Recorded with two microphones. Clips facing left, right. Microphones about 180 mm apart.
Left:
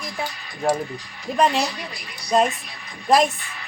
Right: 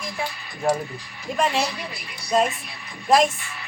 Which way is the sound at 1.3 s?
Centre (ahead or behind).